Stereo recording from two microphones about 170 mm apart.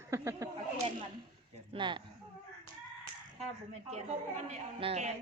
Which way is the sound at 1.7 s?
30° right (ahead or behind).